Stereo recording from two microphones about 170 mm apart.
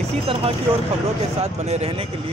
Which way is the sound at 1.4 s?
40° right (ahead or behind).